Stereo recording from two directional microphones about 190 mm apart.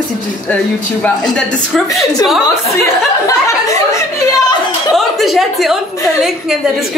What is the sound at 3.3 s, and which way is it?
Speech, 15° left (ahead or behind).